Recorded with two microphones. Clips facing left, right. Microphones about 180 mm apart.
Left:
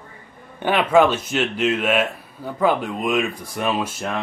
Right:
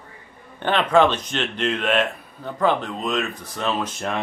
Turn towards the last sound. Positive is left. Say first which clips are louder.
# left 2 dB
turn(degrees=10)  # may be behind; listen again after turning